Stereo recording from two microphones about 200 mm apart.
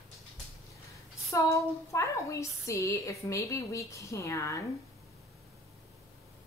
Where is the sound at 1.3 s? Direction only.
15° left (ahead or behind).